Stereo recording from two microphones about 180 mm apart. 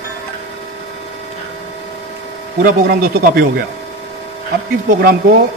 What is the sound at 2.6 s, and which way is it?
Speech, 55° right (ahead or behind).